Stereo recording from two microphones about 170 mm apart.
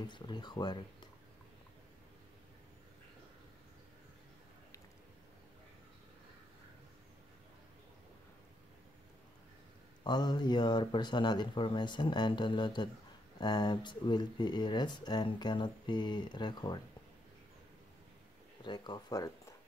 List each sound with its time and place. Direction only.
0.0 s speech: 25° left (ahead or behind)
10.0 s speech: 25° left (ahead or behind)
18.6 s speech: 25° left (ahead or behind)